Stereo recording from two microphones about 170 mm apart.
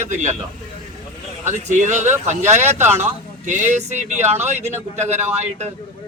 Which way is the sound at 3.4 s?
45° right (ahead or behind).